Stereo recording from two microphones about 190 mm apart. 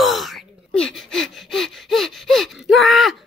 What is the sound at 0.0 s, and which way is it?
Gasp, centre (ahead or behind).